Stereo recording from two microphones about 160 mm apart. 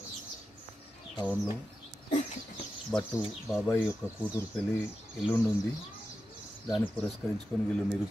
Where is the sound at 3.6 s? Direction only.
15° left (ahead or behind).